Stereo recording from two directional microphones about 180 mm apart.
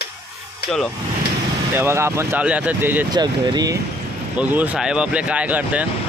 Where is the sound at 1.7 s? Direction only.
15° right (ahead or behind).